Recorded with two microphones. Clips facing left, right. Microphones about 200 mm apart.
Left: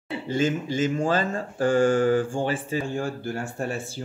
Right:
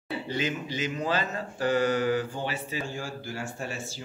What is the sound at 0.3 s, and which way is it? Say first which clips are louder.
Speech: left 8 dB; 50° left (ahead or behind).